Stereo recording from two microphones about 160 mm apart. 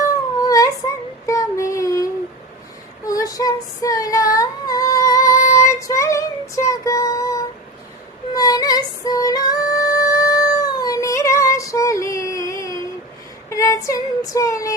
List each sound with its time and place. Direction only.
0.0 s a sound: 20° left (ahead or behind)
1.3 s child singing: 20° left (ahead or behind)
3.1 s female singing: 20° left (ahead or behind)
5.5 s child singing: 20° left (ahead or behind)
8.3 s music: 25° left (ahead or behind)
13.5 s female singing: 20° left (ahead or behind)